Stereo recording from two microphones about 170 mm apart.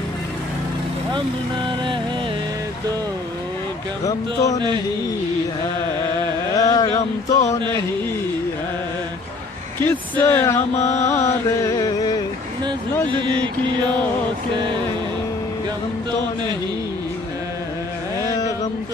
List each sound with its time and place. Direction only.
4.0 s speech: 20° left (ahead or behind)
6.5 s speech: 20° left (ahead or behind)
9.8 s speech: 10° left (ahead or behind)
11.1 s mantra: 20° left (ahead or behind)
13.1 s mantra: 30° right (ahead or behind)
18.3 s a sound: 20° left (ahead or behind)